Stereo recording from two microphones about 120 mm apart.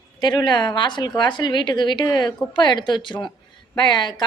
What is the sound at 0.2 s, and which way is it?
Speech, 40° left (ahead or behind).